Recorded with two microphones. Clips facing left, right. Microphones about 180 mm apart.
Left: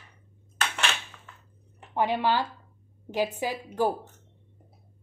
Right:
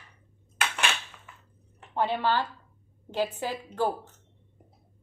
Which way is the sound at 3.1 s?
10° left (ahead or behind).